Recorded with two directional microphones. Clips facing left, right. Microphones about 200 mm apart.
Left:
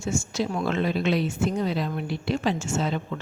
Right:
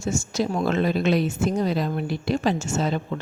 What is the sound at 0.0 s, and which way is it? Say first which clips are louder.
A woman's voice: right 2 dB; 40° right (ahead or behind).